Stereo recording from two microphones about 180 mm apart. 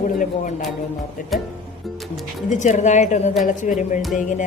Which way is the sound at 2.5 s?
40° left (ahead or behind).